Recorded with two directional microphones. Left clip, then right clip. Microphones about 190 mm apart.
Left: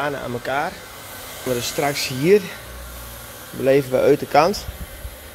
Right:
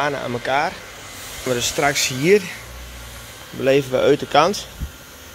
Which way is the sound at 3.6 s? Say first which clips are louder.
Even; 10° left (ahead or behind).